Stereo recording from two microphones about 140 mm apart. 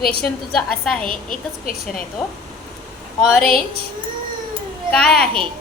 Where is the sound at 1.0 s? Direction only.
90° left.